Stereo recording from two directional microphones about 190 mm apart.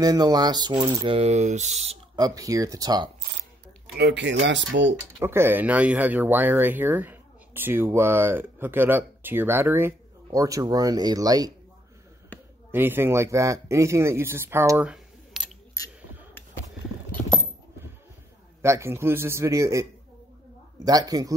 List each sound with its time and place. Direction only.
0.0 s speech: 20° right (ahead or behind); by 2.0 s 35° right (ahead or behind)
2.1 s speech: 20° right (ahead or behind)
3.9 s speech: 65° right (ahead or behind)
5.2 s speech: 10° right (ahead or behind)
12.7 s speech: 10° right (ahead or behind)
18.6 s speech: 15° right (ahead or behind)